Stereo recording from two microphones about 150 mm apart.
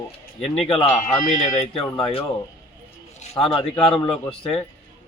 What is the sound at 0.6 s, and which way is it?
Speech, 35° left (ahead or behind).